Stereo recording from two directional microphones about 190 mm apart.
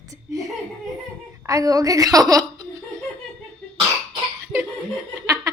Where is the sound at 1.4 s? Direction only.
15° right (ahead or behind).